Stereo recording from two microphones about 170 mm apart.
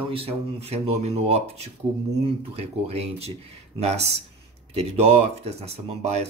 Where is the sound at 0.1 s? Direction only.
35° right (ahead or behind).